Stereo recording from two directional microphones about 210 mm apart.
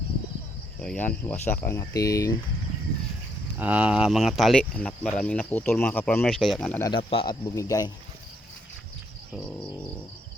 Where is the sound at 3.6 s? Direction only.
10° right (ahead or behind).